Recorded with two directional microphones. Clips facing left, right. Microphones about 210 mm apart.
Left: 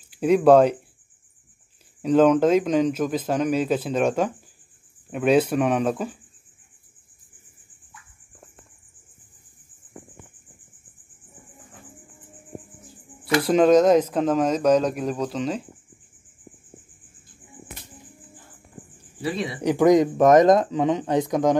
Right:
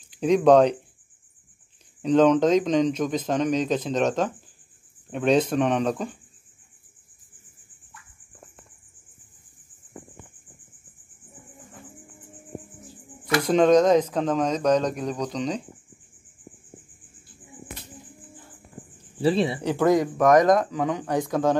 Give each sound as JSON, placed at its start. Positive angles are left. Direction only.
{"t": 0.1, "sound": "speech", "side_deg": 5}
{"t": 2.0, "sound": "speech", "side_deg": 5}
{"t": 13.4, "sound": "speech", "side_deg": 5}
{"t": 19.2, "sound": "speech", "side_deg": -30}
{"t": 19.6, "sound": "speech", "side_deg": 15}